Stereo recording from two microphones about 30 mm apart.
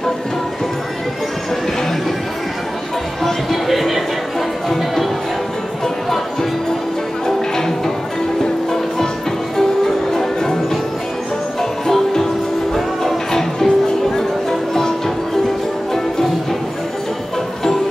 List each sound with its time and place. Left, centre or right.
3.6 s speech: centre
7.2 s music: centre
10.1 s music: centre
11.9 s music: centre